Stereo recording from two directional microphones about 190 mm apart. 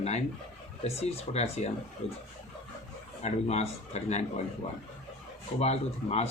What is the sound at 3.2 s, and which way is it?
A man's voice, 35° left (ahead or behind).